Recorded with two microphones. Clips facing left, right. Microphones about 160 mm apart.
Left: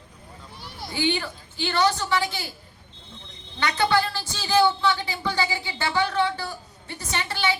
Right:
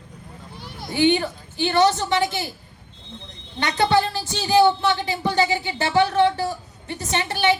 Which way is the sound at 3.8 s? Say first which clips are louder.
Right 4 dB; 20° right (ahead or behind).